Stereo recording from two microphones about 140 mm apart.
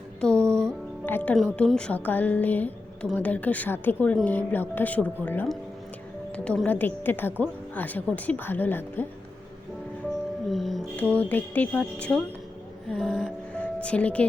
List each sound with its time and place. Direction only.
0.2 s music: 5° left (ahead or behind)
0.4 s music: 20° right (ahead or behind)
1.0 s a woman's voice: 10° left (ahead or behind)
10.5 s music: centre (ahead or behind)
11.1 s a woman's voice: 10° left (ahead or behind)